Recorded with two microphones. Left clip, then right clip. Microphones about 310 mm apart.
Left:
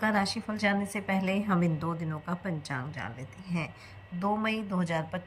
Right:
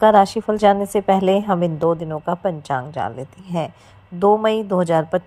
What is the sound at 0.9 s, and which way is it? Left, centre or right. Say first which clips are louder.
A woman's voice: right 15 dB; right.